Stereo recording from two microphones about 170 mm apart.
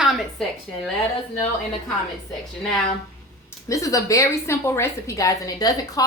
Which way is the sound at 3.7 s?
20° left (ahead or behind).